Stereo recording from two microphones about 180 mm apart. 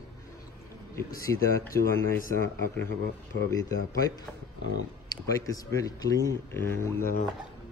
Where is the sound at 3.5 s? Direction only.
20° left (ahead or behind).